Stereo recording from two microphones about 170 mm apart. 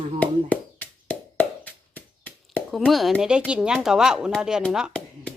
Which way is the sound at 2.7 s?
Centre (ahead or behind).